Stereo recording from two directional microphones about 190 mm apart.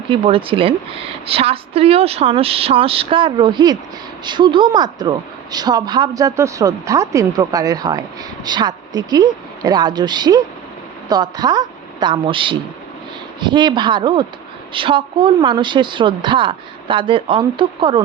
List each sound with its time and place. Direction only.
0.1 s a woman's voice: 30° right (ahead or behind)